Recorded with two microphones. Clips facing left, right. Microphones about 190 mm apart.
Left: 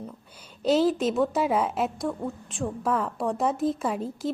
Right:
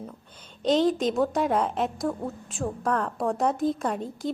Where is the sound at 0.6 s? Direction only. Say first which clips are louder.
Even; 5° left (ahead or behind).